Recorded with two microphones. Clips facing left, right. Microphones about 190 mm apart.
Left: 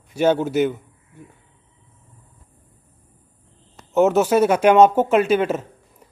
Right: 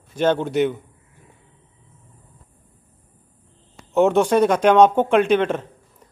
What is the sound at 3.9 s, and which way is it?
Speech, centre (ahead or behind).